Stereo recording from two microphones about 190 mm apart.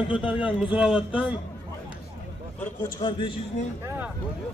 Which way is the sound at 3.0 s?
25° left (ahead or behind).